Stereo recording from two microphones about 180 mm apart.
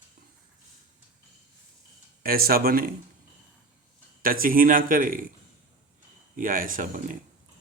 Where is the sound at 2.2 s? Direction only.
55° right (ahead or behind).